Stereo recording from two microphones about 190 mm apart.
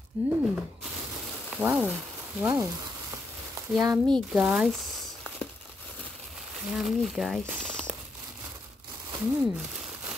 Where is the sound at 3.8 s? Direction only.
25° right (ahead or behind).